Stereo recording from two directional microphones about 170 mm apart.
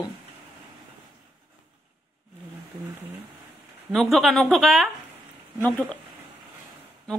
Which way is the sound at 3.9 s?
Centre (ahead or behind).